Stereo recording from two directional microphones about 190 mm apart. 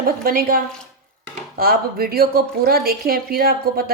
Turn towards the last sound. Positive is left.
turn(degrees=-50)  # may be behind; listen again after turning